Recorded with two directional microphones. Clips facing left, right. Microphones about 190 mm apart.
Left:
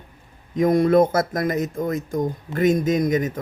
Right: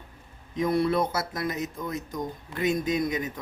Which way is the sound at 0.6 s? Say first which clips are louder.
Left 8 dB; 45° left (ahead or behind).